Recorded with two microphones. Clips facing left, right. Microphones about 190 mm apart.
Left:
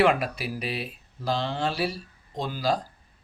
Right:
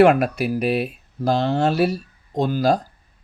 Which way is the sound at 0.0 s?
50° right (ahead or behind).